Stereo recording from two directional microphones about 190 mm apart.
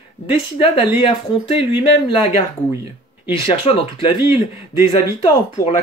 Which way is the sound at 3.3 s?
30° left (ahead or behind).